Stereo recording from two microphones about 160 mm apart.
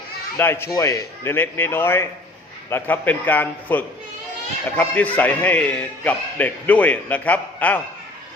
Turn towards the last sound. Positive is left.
turn(degrees=10)  # may be behind; listen again after turning